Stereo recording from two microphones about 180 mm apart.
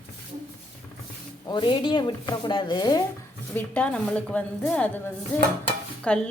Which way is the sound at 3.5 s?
10° left (ahead or behind).